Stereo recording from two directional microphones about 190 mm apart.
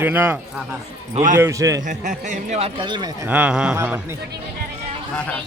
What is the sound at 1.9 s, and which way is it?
Speech, 40° right (ahead or behind).